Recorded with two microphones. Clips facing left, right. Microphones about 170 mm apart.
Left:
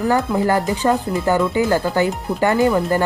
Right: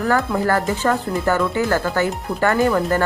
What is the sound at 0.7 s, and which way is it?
Speech, 15° left (ahead or behind).